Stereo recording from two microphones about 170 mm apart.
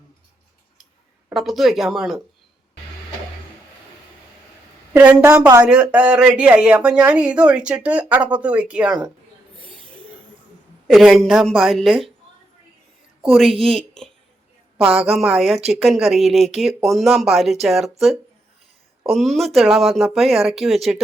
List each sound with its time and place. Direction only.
1.3 s speech: centre (ahead or behind)
4.9 s speech: 15° right (ahead or behind)
5.6 s speech: 5° right (ahead or behind)
10.8 s a woman's voice: centre (ahead or behind)
13.5 s speech: 35° right (ahead or behind)
13.7 s speech: 5° left (ahead or behind)
19.1 s speech: centre (ahead or behind)